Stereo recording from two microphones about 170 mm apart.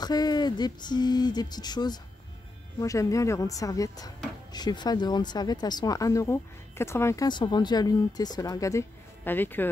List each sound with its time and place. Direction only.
0.0 s speech: 25° left (ahead or behind)